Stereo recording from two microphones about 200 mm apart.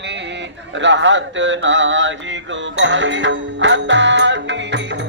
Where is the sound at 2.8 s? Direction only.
65° right (ahead or behind).